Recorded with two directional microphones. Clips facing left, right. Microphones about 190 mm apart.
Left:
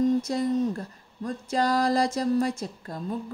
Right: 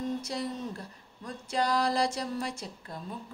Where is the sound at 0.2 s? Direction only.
45° left (ahead or behind).